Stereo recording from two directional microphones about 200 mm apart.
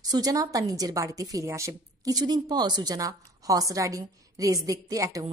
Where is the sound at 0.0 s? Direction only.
20° right (ahead or behind).